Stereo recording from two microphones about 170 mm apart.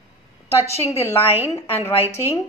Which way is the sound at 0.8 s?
15° left (ahead or behind).